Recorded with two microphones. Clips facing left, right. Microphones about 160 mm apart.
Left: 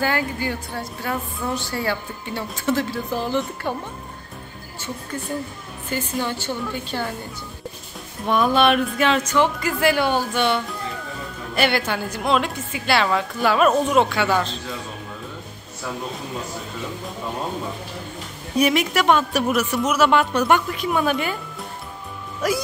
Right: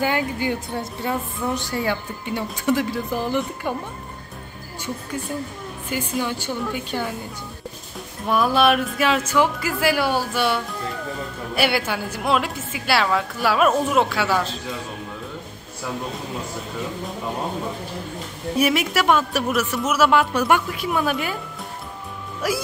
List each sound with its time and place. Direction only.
0.0 s a woman's voice: 20° right (ahead or behind)
5.9 s a woman's voice: 10° right (ahead or behind)
8.3 s a woman's voice: 5° right (ahead or behind)
18.6 s a woman's voice: 5° right (ahead or behind)
22.4 s a woman's voice: 5° right (ahead or behind)